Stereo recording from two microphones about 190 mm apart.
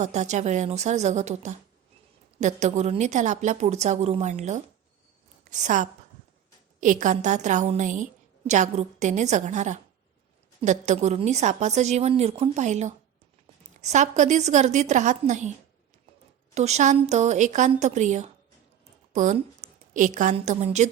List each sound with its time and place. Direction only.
0.0 s a woman's voice: 40° right (ahead or behind)
16.6 s a woman's voice: 35° right (ahead or behind)